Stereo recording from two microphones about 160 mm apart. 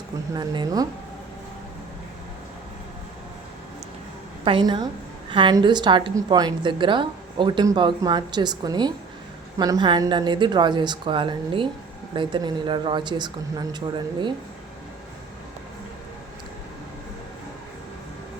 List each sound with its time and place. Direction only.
0.3 s a woman's voice: 25° right (ahead or behind)
4.4 s a woman's voice: 30° right (ahead or behind)